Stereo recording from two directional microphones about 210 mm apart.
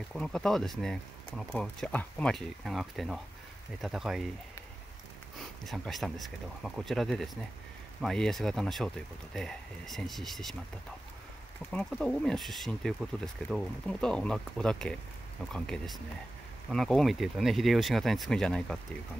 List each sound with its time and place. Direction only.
0.1 s speech: centre (ahead or behind)
5.4 s speech: centre (ahead or behind)
11.7 s speech: 5° left (ahead or behind)